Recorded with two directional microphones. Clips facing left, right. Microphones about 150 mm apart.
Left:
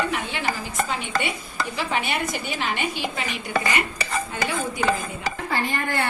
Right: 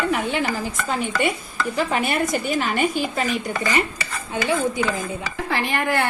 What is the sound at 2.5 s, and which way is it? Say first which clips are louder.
Speech: right 6 dB; 45° right (ahead or behind).